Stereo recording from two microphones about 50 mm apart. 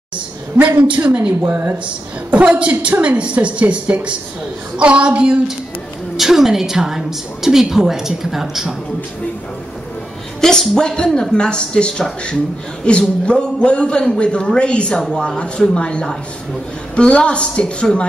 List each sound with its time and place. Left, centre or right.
0.6 s a woman's voice: right
1.4 s speech: right
2.3 s a woman's voice: right
6.1 s a woman's voice: centre
10.4 s a woman's voice: centre
13.2 s speech: left